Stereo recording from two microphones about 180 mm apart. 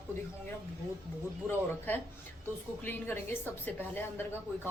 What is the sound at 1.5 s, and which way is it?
A woman's voice, 10° left (ahead or behind).